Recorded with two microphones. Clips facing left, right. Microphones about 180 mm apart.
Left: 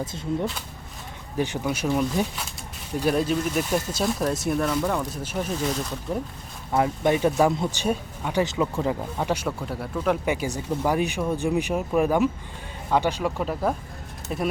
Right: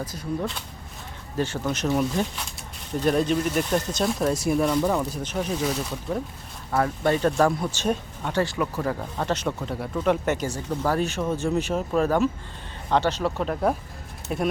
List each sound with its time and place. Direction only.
0.0 s speech: 25° left (ahead or behind)
1.4 s speech: 10° left (ahead or behind)
5.5 s speech: 5° right (ahead or behind)
6.7 s speech: 15° left (ahead or behind); by 10.2 s centre (ahead or behind)
10.2 s speech: 15° left (ahead or behind); by 14.4 s centre (ahead or behind)